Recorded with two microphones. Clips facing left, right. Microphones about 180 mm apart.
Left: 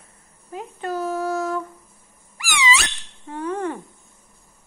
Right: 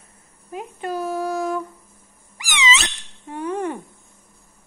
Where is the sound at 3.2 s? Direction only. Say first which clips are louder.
Right 1 dB; 15° right (ahead or behind).